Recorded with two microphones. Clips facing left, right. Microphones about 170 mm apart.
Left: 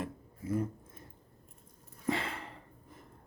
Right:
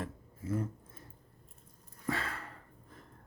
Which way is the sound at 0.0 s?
15° left (ahead or behind).